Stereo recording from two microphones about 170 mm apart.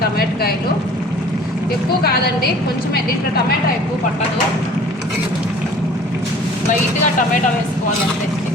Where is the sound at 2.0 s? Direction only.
65° left (ahead or behind).